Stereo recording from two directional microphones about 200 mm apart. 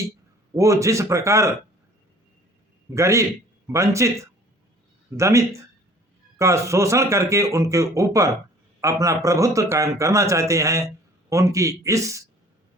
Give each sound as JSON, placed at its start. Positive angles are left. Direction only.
{"t": 0.5, "sound": "speech", "side_deg": -15}
{"t": 2.9, "sound": "speech", "side_deg": -15}
{"t": 6.4, "sound": "a man's voice", "side_deg": -15}